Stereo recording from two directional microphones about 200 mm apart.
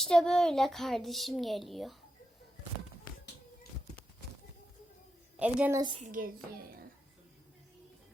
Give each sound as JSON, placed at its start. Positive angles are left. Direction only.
{"t": 0.0, "sound": "a child's voice", "side_deg": 0}
{"t": 5.4, "sound": "a woman's voice", "side_deg": -10}
{"t": 6.2, "sound": "a child's voice", "side_deg": -45}